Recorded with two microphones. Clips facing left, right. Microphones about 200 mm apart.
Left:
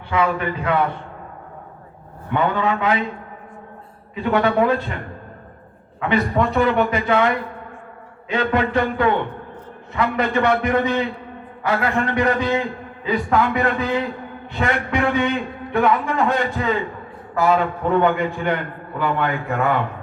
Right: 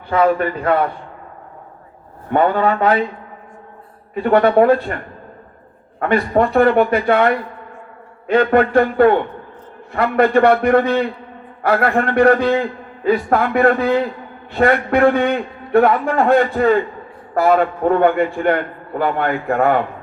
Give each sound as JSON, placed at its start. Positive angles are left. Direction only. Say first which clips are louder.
{"t": 0.1, "sound": "speech", "louder": "right 5 dB", "side_deg": -45}
{"t": 2.3, "sound": "speech", "louder": "right 5 dB", "side_deg": -40}
{"t": 4.1, "sound": "speech", "louder": "right 6 dB", "side_deg": -50}
{"t": 6.0, "sound": "a man's voice", "louder": "right 4 dB", "side_deg": -55}